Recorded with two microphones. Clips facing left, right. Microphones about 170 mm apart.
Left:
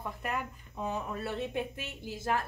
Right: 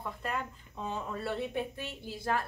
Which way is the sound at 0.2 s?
10° left (ahead or behind).